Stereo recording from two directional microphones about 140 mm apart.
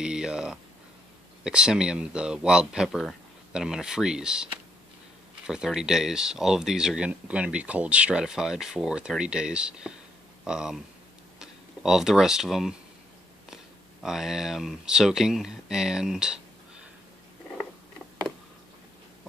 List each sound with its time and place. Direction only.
0.0 s speech: 5° right (ahead or behind)
5.5 s speech: 5° right (ahead or behind)
14.0 s speech: 5° right (ahead or behind)